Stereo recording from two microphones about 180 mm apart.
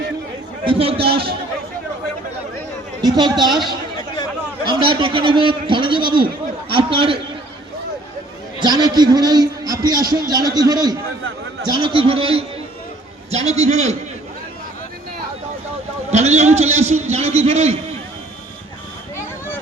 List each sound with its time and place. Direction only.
0.6 s a man's voice: 30° right (ahead or behind)
3.0 s a man's voice: 25° right (ahead or behind)
4.6 s a man's voice: 25° right (ahead or behind)
8.5 s a man's voice: 25° right (ahead or behind)
16.1 s a man's voice: 40° right (ahead or behind)